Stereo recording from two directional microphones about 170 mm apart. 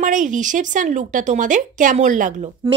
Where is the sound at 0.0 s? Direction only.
50° right (ahead or behind).